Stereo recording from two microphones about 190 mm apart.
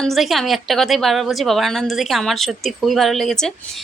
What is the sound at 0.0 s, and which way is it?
A woman's voice, centre (ahead or behind).